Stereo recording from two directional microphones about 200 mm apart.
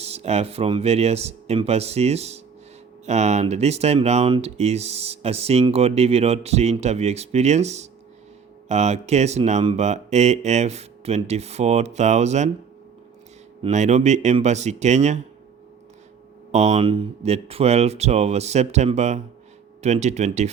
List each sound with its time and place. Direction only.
0.0 s speech: 30° right (ahead or behind)
13.6 s speech: 35° right (ahead or behind)
16.5 s speech: 35° right (ahead or behind)